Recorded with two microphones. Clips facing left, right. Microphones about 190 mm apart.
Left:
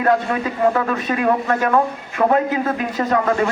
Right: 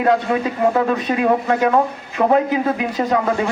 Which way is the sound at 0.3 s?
20° right (ahead or behind).